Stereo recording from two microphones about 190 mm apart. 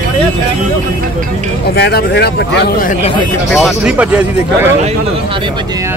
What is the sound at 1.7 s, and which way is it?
Speech, 60° left (ahead or behind).